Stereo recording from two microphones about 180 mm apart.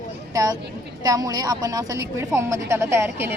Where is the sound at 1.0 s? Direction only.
20° right (ahead or behind).